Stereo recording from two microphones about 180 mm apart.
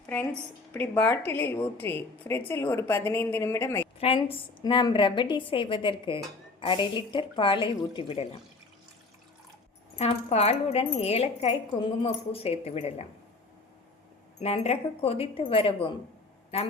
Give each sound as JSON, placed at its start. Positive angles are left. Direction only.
{"t": 0.7, "sound": "a woman's voice", "side_deg": 10}
{"t": 4.0, "sound": "a woman's voice", "side_deg": 30}
{"t": 10.0, "sound": "a woman's voice", "side_deg": 35}
{"t": 14.4, "sound": "a woman's voice", "side_deg": 35}